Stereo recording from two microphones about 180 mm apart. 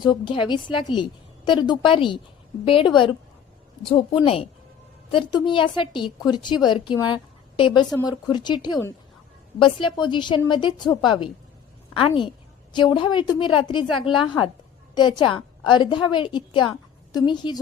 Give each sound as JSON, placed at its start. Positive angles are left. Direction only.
{"t": 0.0, "sound": "a woman's voice", "side_deg": 25}
{"t": 11.9, "sound": "a woman's voice", "side_deg": 25}